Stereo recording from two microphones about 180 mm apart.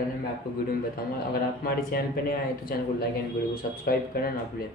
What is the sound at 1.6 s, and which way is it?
Speech, 55° left (ahead or behind).